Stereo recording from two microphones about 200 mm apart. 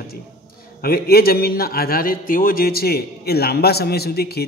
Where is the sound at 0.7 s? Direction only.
50° left (ahead or behind).